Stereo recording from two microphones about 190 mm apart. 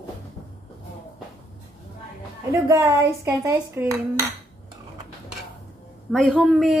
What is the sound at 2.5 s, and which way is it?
Speech, 15° right (ahead or behind).